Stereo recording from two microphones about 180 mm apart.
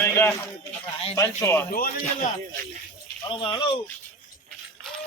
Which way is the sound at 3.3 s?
30° left (ahead or behind).